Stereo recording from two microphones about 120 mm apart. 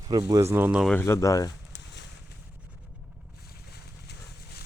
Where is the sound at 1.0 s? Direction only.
25° left (ahead or behind).